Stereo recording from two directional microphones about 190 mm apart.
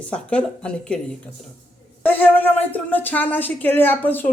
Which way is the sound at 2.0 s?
10° left (ahead or behind).